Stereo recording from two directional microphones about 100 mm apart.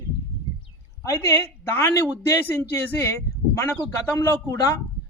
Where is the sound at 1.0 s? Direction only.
30° left (ahead or behind).